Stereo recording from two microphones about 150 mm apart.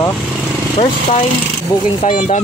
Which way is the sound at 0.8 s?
45° left (ahead or behind).